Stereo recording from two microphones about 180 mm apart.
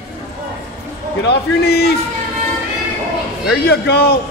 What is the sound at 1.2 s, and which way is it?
Speech, 70° left (ahead or behind).